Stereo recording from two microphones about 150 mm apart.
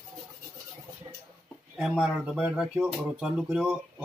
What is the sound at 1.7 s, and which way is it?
Speech, 5° right (ahead or behind).